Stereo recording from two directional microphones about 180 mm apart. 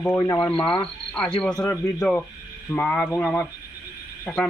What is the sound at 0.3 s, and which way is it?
Speech, 5° left (ahead or behind).